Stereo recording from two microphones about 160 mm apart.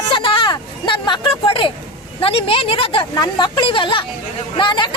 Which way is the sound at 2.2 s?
35° left (ahead or behind).